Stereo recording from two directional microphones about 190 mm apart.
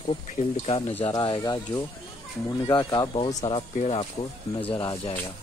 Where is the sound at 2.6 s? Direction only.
20° left (ahead or behind).